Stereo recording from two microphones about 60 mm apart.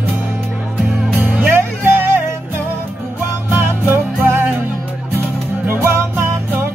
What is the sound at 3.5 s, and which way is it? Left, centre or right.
Music, right.